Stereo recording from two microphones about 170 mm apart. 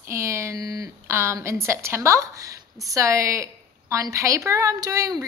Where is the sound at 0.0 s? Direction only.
15° right (ahead or behind).